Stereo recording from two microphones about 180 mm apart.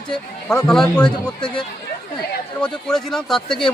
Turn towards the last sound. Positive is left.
turn(degrees=0)  # may be behind; listen again after turning